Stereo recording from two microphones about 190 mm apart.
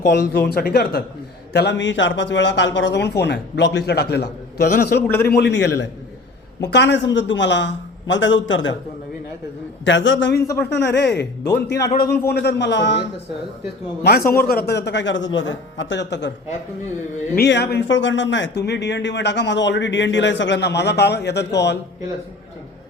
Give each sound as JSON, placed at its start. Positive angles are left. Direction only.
{"t": 0.0, "sound": "speech", "side_deg": 55}
{"t": 1.5, "sound": "speech", "side_deg": 65}
{"t": 5.0, "sound": "a man's voice", "side_deg": 10}
{"t": 5.3, "sound": "a man's voice", "side_deg": 60}
{"t": 9.8, "sound": "a man's voice", "side_deg": 75}
{"t": 14.0, "sound": "a man's voice", "side_deg": 55}
{"t": 17.3, "sound": "speech", "side_deg": 60}